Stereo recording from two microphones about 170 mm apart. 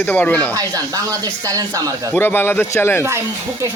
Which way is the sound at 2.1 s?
10° left (ahead or behind).